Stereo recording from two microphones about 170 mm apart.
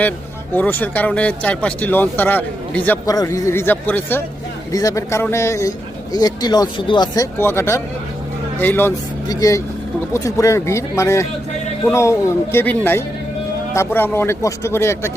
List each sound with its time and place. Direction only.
0.5 s speech: 10° left (ahead or behind)